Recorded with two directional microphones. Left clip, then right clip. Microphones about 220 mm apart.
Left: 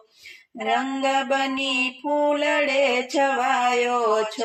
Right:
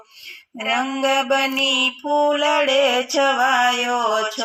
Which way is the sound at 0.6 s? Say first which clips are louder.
Right 2 dB; 20° right (ahead or behind).